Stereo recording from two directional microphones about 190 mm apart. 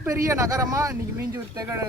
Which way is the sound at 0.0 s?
15° right (ahead or behind).